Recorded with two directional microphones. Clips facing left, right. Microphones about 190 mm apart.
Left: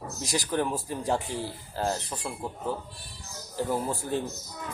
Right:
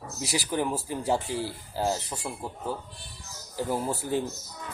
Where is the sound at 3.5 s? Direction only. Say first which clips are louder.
Even; 10° right (ahead or behind).